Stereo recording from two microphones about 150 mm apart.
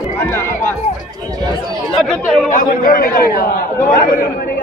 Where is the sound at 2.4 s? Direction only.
65° left (ahead or behind); by 3.7 s 80° left.